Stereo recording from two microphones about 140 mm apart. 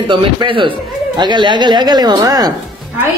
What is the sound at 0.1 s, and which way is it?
Speech, 35° right (ahead or behind).